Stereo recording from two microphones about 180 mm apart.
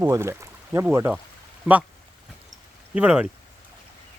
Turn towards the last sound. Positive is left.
turn(degrees=-5)  # may be behind; listen again after turning